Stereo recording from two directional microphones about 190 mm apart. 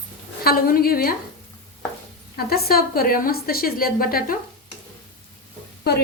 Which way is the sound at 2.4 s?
55° left (ahead or behind).